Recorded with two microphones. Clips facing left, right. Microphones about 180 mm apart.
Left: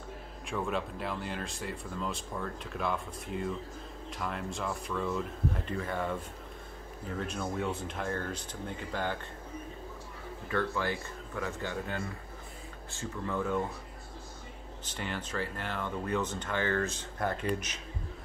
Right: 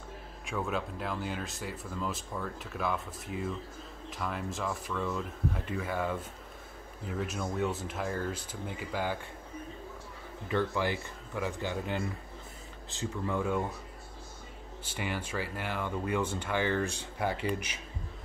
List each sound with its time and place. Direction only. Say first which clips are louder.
0.5 s speech: even; centre (ahead or behind)
7.2 s speech: right 2 dB; 5° right (ahead or behind)
10.5 s speech: right 2 dB; 15° right (ahead or behind)
14.9 s speech: right 2 dB; 10° right (ahead or behind)